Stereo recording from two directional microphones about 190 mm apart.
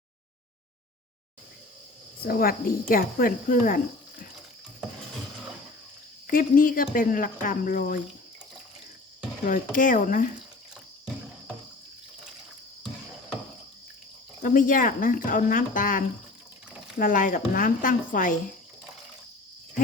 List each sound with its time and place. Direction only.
2.2 s speech: 50° left (ahead or behind)
6.2 s speech: 45° left (ahead or behind)
9.5 s speech: 45° left (ahead or behind)
14.4 s speech: 45° left (ahead or behind)